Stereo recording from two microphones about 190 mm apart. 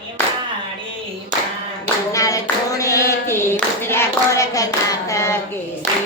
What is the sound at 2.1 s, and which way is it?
Clapping, 15° left (ahead or behind).